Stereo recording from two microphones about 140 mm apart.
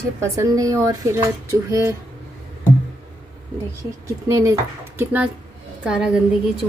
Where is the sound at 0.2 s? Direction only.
25° right (ahead or behind).